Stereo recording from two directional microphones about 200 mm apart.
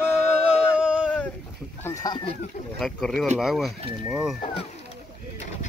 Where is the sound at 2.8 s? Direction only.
Centre (ahead or behind).